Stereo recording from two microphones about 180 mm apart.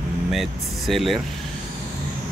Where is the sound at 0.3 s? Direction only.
Centre (ahead or behind).